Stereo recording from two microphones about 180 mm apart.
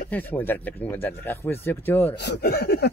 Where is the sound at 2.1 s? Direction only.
70° left (ahead or behind).